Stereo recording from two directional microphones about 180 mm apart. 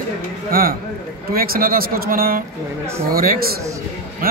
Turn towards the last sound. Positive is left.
turn(degrees=-55)  # may be behind; listen again after turning